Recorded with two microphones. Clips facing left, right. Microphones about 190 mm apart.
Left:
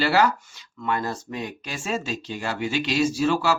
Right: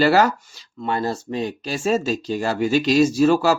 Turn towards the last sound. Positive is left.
turn(degrees=-40)  # may be behind; listen again after turning